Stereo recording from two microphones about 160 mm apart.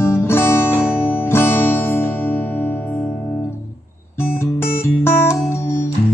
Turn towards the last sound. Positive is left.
turn(degrees=15)  # may be behind; listen again after turning